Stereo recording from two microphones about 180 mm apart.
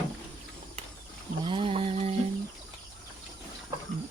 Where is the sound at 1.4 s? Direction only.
30° right (ahead or behind).